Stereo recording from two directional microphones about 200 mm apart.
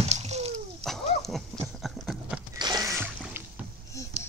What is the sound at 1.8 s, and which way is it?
Horse, centre (ahead or behind).